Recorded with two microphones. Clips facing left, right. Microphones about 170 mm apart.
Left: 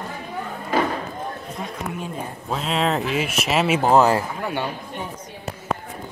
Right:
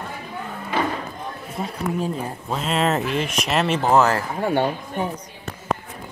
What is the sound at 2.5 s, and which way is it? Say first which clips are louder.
Speech: right 1 dB; centre (ahead or behind).